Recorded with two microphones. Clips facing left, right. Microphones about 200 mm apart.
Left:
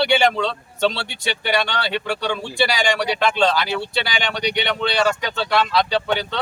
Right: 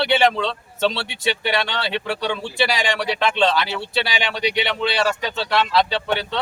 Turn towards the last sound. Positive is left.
turn(degrees=0)  # may be behind; listen again after turning